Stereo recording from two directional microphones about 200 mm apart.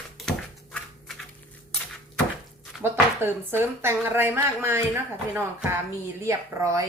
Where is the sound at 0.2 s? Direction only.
5° left (ahead or behind).